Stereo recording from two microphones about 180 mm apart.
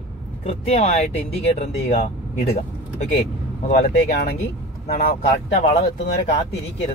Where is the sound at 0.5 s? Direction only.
35° left (ahead or behind).